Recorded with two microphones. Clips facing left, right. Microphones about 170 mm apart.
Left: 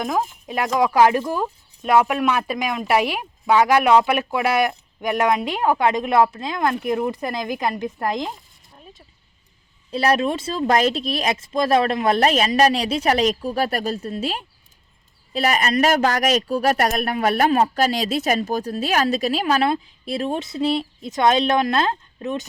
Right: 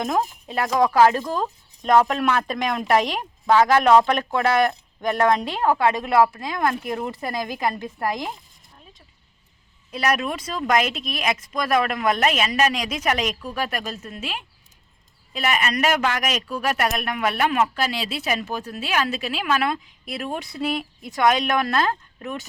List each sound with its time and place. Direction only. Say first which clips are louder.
0.0 s speech: even; centre (ahead or behind)
0.4 s speech: left 1 dB; 15° left (ahead or behind)
9.9 s speech: left 4 dB; 30° left (ahead or behind)